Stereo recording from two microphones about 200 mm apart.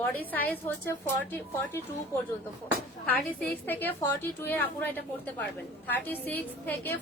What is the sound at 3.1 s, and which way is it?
A woman's voice, 10° left (ahead or behind).